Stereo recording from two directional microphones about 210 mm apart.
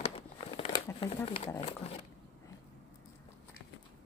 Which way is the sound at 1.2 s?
30° left (ahead or behind).